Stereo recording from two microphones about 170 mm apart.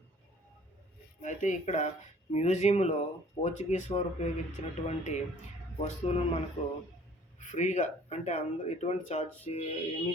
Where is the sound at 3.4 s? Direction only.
45° left (ahead or behind).